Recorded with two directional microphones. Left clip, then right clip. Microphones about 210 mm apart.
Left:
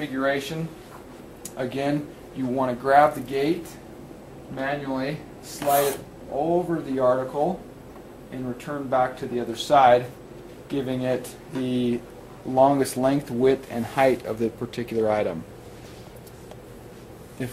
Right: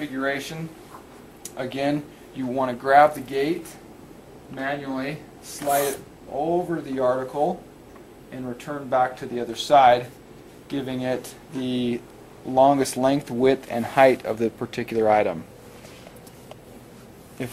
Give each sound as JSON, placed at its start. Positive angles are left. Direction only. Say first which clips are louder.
{"t": 0.0, "sound": "speech", "louder": "left 2 dB", "side_deg": 0}
{"t": 1.6, "sound": "speech", "louder": "right 1 dB", "side_deg": 0}
{"t": 4.6, "sound": "speech", "louder": "left 1 dB", "side_deg": -5}
{"t": 8.6, "sound": "speech", "louder": "right 1 dB", "side_deg": -5}